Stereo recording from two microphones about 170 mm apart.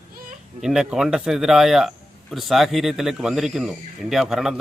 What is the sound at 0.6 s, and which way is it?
A man's voice, 5° right (ahead or behind).